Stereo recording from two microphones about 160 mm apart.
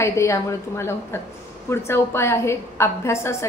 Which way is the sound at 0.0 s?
15° left (ahead or behind).